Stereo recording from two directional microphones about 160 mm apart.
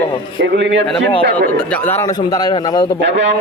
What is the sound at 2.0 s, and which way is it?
Speech, 25° left (ahead or behind).